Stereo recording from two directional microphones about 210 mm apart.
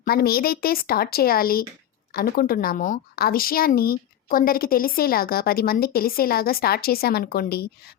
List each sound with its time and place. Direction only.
0.0 s a woman's voice: 45° left (ahead or behind)